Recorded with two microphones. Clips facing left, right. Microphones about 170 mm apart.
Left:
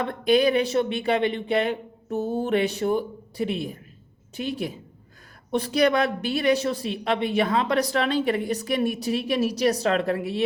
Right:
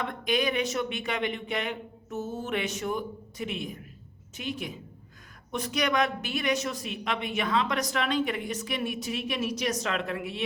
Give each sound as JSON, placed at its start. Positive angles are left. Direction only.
{"t": 0.0, "sound": "a woman's voice", "side_deg": 35}